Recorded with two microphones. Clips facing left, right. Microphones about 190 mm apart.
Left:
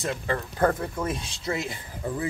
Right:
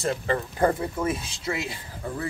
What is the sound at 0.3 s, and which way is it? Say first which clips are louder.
Speech: even; 15° right (ahead or behind).